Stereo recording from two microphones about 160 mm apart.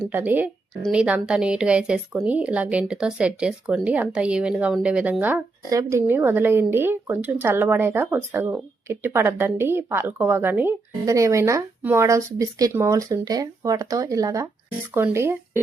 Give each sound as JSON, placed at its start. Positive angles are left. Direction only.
{"t": 0.1, "sound": "a woman's voice", "side_deg": -10}
{"t": 5.6, "sound": "a woman's voice", "side_deg": -20}